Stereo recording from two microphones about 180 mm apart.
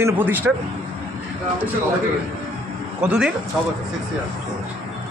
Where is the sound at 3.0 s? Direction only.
5° right (ahead or behind).